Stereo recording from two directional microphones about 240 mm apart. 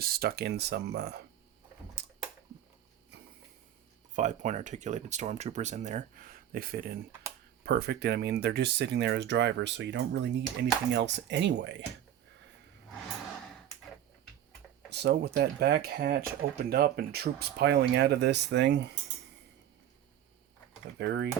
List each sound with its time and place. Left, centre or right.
0.0 s speech: right
2.0 s typing: right
4.1 s speech: right
14.8 s speech: right
21.0 s speech: right